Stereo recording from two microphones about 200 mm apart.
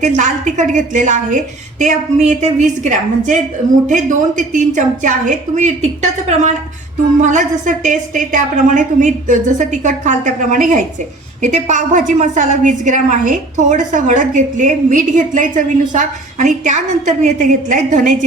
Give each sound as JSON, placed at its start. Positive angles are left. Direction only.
{"t": 0.2, "sound": "a woman's voice", "side_deg": -40}